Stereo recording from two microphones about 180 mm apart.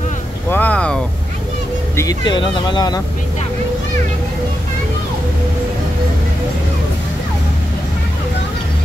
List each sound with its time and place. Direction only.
0.5 s vehicle: 10° left (ahead or behind)
2.0 s speech: 20° left (ahead or behind)